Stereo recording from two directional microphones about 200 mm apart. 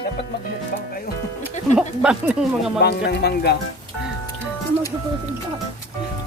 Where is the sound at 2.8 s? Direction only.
55° left (ahead or behind).